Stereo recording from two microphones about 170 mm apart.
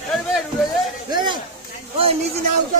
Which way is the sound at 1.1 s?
25° right (ahead or behind).